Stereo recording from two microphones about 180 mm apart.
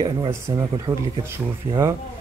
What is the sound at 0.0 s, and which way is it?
Speech, 20° right (ahead or behind).